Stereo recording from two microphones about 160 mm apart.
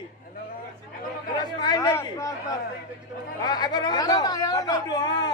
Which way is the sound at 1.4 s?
25° left (ahead or behind).